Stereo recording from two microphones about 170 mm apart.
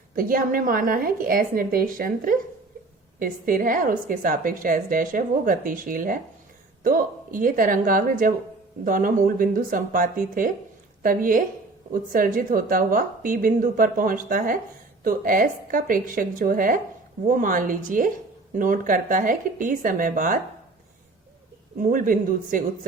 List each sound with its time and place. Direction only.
0.2 s a woman's voice: 55° right (ahead or behind)
21.8 s a woman's voice: 55° right (ahead or behind)